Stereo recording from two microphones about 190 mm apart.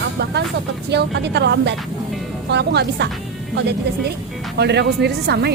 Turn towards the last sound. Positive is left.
turn(degrees=-60)  # may be behind; listen again after turning